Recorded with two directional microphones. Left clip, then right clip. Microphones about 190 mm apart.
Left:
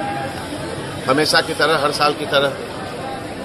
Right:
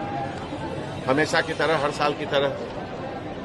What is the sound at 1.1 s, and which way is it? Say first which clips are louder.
Speech: left 6 dB; 25° right (ahead or behind).